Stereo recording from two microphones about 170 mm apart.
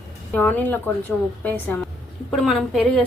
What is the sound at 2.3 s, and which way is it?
Speech, centre (ahead or behind).